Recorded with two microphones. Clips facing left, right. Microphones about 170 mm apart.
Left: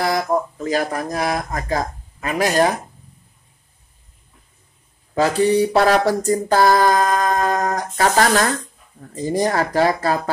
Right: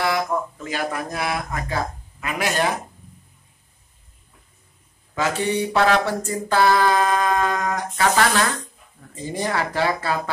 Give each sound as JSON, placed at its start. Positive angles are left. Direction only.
{"t": 0.0, "sound": "speech", "side_deg": 40}
{"t": 5.1, "sound": "a sound", "side_deg": 35}
{"t": 9.1, "sound": "speech", "side_deg": 40}